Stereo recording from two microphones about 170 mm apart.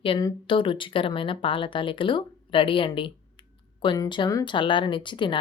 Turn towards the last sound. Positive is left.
turn(degrees=30)  # may be behind; listen again after turning